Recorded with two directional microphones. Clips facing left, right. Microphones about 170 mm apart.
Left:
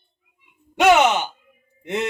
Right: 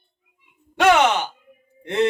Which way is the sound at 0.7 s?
10° left (ahead or behind).